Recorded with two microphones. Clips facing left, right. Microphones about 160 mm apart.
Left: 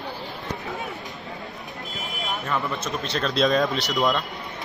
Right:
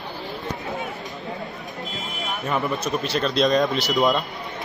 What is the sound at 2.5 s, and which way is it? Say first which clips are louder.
Speech: right 4 dB; 20° right (ahead or behind).